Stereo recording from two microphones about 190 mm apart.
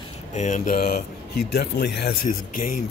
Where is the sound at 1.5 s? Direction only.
60° left (ahead or behind).